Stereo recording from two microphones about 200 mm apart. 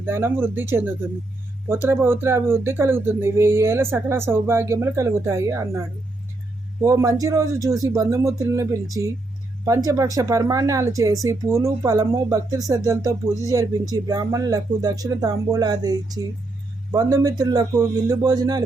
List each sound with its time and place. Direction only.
0.0 s speech: 10° right (ahead or behind)
6.8 s speech: 15° right (ahead or behind)